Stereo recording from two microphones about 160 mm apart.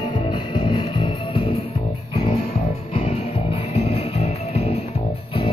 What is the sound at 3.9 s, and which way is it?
Music, 40° left (ahead or behind).